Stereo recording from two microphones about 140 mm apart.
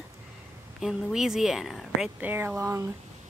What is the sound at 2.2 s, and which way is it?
Speech, 15° right (ahead or behind).